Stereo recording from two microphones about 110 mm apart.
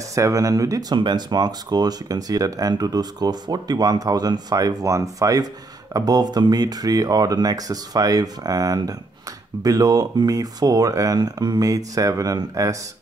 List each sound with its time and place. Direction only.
0.1 s speech: 30° right (ahead or behind)